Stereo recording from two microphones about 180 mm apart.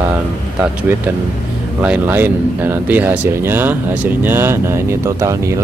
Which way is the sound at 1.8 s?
10° right (ahead or behind).